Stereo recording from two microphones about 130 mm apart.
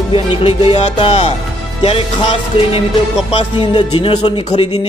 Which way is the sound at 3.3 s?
45° left (ahead or behind).